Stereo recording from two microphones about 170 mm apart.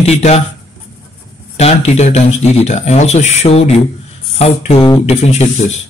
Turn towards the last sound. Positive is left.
turn(degrees=40)  # may be behind; listen again after turning